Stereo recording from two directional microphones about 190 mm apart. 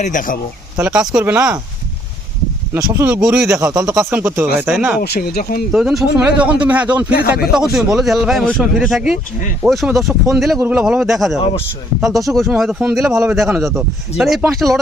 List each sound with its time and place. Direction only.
0.0 s speech: 45° left (ahead or behind)
0.8 s speech: 5° right (ahead or behind)
2.7 s speech: 15° right (ahead or behind)
4.9 s speech: 55° left (ahead or behind)
5.7 s speech: centre (ahead or behind)
7.2 s speech: 55° left (ahead or behind)
7.5 s speech: centre (ahead or behind)